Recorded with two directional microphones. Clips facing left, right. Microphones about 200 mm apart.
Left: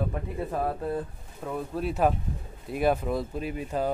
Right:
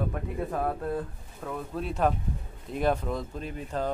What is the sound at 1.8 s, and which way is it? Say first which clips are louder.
Speech: left 2 dB; 5° left (ahead or behind).